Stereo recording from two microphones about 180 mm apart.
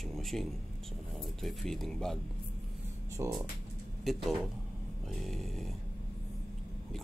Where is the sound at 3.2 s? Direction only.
15° right (ahead or behind).